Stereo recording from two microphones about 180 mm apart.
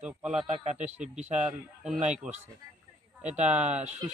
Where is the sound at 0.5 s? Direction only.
40° right (ahead or behind).